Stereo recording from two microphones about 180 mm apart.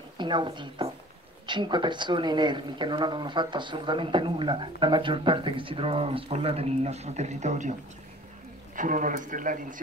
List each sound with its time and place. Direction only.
0.2 s a woman's voice: 25° right (ahead or behind); by 7.7 s 40° right (ahead or behind)
8.7 s speech: 45° right (ahead or behind)